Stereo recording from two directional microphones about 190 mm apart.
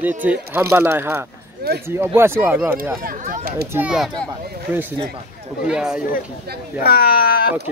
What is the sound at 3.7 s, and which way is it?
Speech, 5° right (ahead or behind).